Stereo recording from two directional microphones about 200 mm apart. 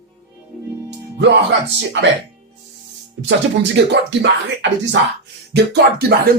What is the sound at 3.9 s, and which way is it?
Speech, 60° right (ahead or behind).